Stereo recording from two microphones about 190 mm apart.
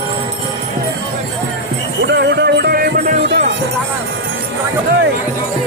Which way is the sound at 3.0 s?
40° right (ahead or behind).